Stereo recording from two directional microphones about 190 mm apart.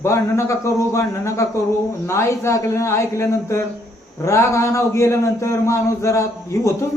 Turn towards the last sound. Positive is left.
turn(degrees=15)  # may be behind; listen again after turning